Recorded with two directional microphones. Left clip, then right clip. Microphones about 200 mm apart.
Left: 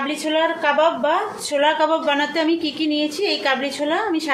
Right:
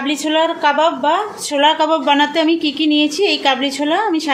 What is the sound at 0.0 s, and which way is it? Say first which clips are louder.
A woman's voice: right 4 dB; 45° right (ahead or behind).